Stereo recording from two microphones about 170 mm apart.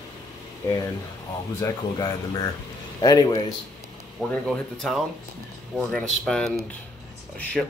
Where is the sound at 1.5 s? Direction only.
20° left (ahead or behind).